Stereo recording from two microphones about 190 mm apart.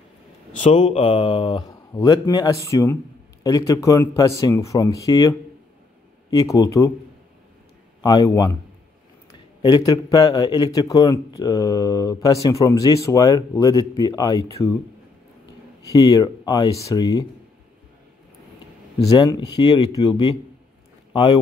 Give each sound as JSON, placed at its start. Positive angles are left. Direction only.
{"t": 0.6, "sound": "mantra", "side_deg": 30}
{"t": 2.0, "sound": "speech", "side_deg": 20}
{"t": 6.3, "sound": "speech", "side_deg": 20}
{"t": 8.0, "sound": "speech", "side_deg": 20}
{"t": 15.8, "sound": "speech", "side_deg": 20}
{"t": 18.9, "sound": "speech", "side_deg": 20}